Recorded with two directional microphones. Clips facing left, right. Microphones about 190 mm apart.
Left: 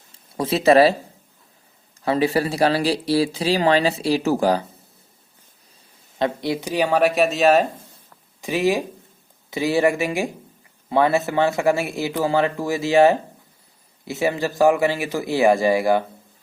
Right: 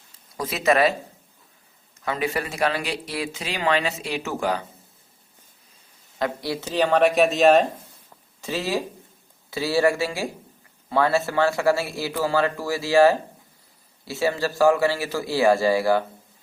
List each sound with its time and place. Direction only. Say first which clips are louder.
0.3 s speech: left 6 dB; 30° left (ahead or behind)
2.0 s speech: left 7 dB; 30° left (ahead or behind)
6.1 s a man's voice: left 4 dB; 25° left (ahead or behind); by 7.7 s centre (ahead or behind)
8.4 s a man's voice: left 6 dB; 15° left (ahead or behind)